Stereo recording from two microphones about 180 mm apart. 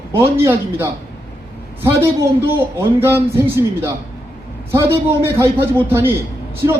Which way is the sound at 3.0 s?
15° right (ahead or behind).